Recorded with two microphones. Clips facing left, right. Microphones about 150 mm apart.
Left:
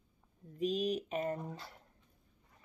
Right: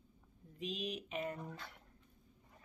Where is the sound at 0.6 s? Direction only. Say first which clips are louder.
Left 9 dB; 40° left (ahead or behind).